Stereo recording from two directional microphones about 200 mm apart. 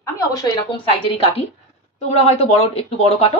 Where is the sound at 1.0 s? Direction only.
25° left (ahead or behind).